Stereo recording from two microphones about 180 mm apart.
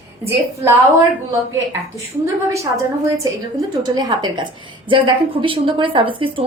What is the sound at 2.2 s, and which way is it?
Speech, 15° right (ahead or behind).